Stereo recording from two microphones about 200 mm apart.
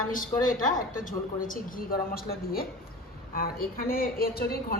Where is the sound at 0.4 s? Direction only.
40° left (ahead or behind).